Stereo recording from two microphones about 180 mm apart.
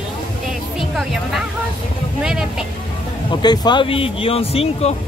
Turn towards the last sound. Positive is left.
turn(degrees=35)  # may be behind; listen again after turning